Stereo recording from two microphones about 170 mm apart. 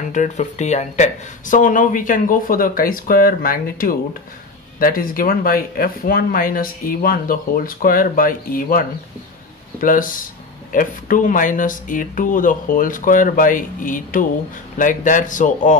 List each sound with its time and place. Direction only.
0.1 s speech: 45° left (ahead or behind)